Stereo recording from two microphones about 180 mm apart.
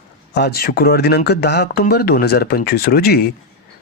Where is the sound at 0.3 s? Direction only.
60° left (ahead or behind).